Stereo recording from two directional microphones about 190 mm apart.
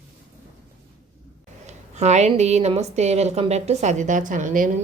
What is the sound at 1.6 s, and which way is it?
Speech, 35° right (ahead or behind).